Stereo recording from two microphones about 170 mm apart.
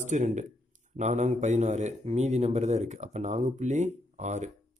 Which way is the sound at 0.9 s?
45° right (ahead or behind).